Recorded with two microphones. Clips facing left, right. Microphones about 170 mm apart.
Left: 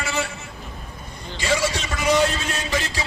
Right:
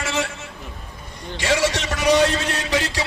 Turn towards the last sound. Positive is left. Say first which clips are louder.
# right 3 dB
turn(degrees=-70)  # may be behind; listen again after turning